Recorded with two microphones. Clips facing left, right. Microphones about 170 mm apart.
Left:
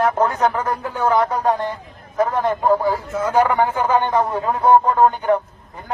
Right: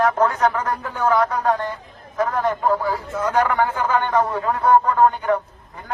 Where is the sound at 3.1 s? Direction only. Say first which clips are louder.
Left 2 dB; 10° left (ahead or behind).